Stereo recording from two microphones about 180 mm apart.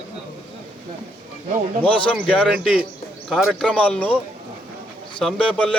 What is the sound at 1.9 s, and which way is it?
Speech, 5° left (ahead or behind).